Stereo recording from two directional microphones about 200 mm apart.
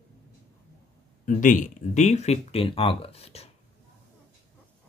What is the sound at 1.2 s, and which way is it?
Speech, 40° left (ahead or behind).